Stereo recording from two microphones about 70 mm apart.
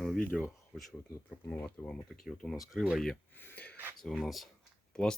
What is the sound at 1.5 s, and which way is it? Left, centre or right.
Speech, left.